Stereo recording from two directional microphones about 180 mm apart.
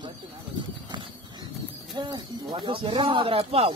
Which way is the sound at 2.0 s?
25° right (ahead or behind).